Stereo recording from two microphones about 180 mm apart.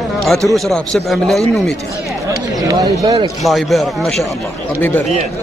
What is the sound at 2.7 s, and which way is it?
Speech, 20° right (ahead or behind).